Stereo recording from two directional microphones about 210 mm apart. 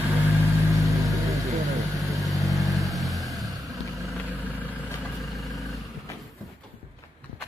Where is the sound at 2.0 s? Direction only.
Centre (ahead or behind).